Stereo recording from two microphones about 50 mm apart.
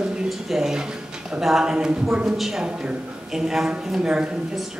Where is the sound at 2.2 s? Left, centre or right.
Centre.